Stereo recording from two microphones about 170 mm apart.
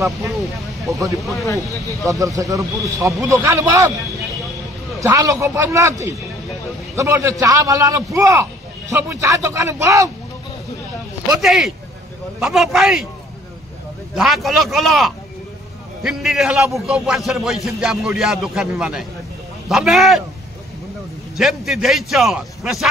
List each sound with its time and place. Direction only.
0.9 s a man's voice: 20° right (ahead or behind)
2.0 s a man's voice: 20° right (ahead or behind)
5.0 s a man's voice: 20° right (ahead or behind)
11.3 s a man's voice: centre (ahead or behind)
14.1 s a man's voice: centre (ahead or behind)
21.4 s a man's voice: centre (ahead or behind)